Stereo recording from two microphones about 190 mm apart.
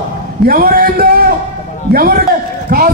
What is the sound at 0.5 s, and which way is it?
A man's voice, 50° right (ahead or behind).